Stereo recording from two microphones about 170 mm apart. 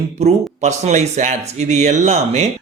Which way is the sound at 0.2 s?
40° right (ahead or behind).